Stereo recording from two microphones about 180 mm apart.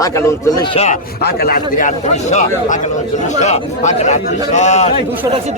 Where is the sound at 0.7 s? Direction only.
35° left (ahead or behind).